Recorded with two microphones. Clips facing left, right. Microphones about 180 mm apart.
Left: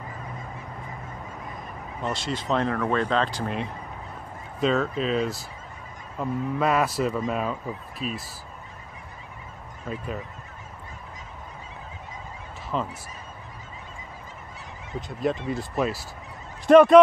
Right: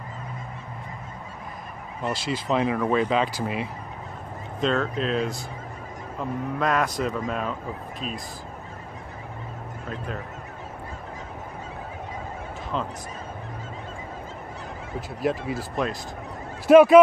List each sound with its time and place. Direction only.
2.0 s speech: 5° right (ahead or behind)
6.6 s speech: 5° left (ahead or behind)
9.8 s speech: 5° left (ahead or behind)
12.7 s speech: 5° left (ahead or behind)
15.0 s speech: 5° right (ahead or behind)